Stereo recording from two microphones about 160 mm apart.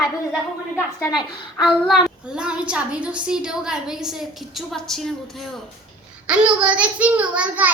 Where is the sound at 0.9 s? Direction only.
25° left (ahead or behind).